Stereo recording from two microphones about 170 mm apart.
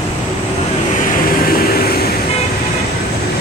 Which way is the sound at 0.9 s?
50° left (ahead or behind).